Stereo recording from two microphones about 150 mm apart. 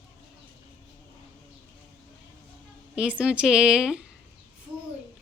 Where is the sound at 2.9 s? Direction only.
5° right (ahead or behind).